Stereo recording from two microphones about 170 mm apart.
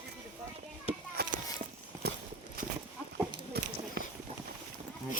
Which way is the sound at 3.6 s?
70° right (ahead or behind).